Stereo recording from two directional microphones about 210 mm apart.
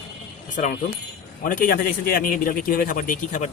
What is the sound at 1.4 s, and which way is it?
A man's voice, 40° left (ahead or behind).